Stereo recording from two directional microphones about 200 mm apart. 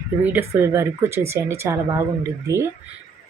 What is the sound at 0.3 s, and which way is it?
Speech, 10° right (ahead or behind).